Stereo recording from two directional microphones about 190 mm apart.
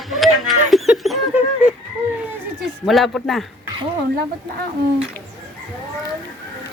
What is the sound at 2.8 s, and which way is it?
Speech, centre (ahead or behind).